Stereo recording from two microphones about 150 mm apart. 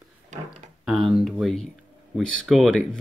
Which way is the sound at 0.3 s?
50° right (ahead or behind).